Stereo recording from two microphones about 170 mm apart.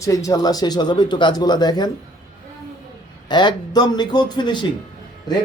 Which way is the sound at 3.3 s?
25° left (ahead or behind).